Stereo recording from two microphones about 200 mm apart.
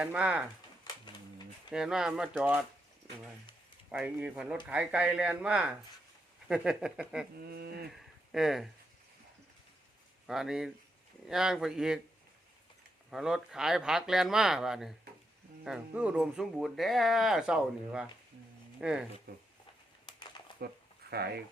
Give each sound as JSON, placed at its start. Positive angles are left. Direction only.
{"t": 0.0, "sound": "speech", "side_deg": -5}
{"t": 1.7, "sound": "speech", "side_deg": 0}
{"t": 3.9, "sound": "speech", "side_deg": -5}
{"t": 7.3, "sound": "speech", "side_deg": -50}
{"t": 8.3, "sound": "speech", "side_deg": 0}
{"t": 10.2, "sound": "speech", "side_deg": 0}
{"t": 13.1, "sound": "speech", "side_deg": 0}
{"t": 20.1, "sound": "a sound", "side_deg": 25}
{"t": 21.1, "sound": "speech", "side_deg": -50}